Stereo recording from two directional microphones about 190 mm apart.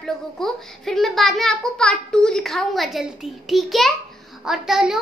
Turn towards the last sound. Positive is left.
turn(degrees=0)  # may be behind; listen again after turning